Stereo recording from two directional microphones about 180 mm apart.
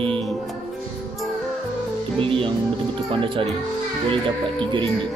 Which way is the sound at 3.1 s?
30° right (ahead or behind).